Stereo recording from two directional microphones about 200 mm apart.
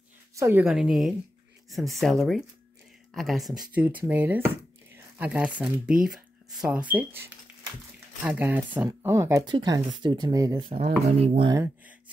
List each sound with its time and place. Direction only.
0.4 s speech: 10° right (ahead or behind)
11.1 s speech: 30° right (ahead or behind)
11.5 s speech: 15° right (ahead or behind)